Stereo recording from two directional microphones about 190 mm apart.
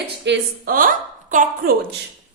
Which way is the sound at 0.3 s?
50° right (ahead or behind).